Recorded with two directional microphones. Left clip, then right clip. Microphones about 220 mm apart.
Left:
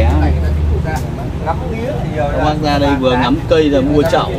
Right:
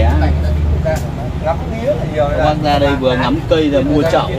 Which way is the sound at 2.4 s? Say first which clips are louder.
Right 1 dB; 45° left (ahead or behind).